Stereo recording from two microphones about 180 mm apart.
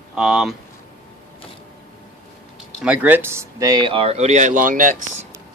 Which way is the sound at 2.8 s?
10° right (ahead or behind).